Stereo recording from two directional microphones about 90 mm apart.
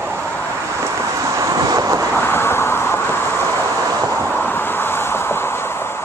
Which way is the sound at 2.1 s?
25° left (ahead or behind).